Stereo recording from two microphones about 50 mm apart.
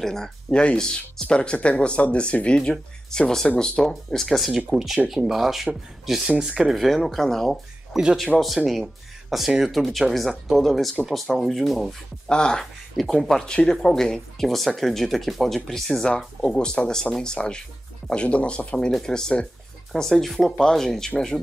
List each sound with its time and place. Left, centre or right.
0.0 s speech: centre
6.3 s speech: right
6.6 s speech: centre
7.9 s speech: centre
9.3 s speech: centre
12.3 s speech: centre
13.0 s speech: centre